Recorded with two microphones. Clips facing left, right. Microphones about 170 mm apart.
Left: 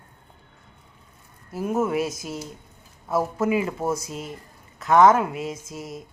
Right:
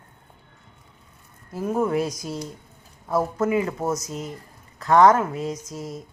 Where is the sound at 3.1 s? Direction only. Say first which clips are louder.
Right 1 dB; 5° left (ahead or behind).